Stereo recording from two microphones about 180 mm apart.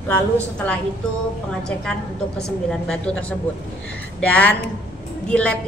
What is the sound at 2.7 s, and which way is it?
A woman's voice, 5° left (ahead or behind).